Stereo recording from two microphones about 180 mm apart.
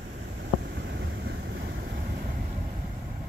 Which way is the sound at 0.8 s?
65° right (ahead or behind).